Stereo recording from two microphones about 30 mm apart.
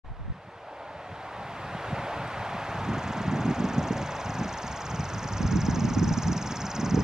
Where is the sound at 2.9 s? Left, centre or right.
Centre.